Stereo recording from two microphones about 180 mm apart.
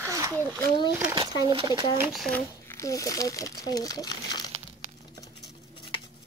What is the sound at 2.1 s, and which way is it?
Speech, centre (ahead or behind).